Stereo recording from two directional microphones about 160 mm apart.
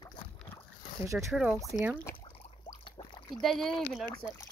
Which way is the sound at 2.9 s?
30° left (ahead or behind).